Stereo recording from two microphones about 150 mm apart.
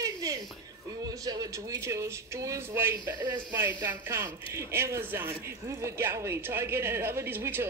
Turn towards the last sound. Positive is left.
turn(degrees=-15)  # may be behind; listen again after turning